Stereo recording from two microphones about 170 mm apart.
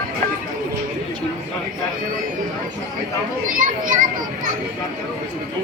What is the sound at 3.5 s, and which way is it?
A child's voice, 50° right (ahead or behind).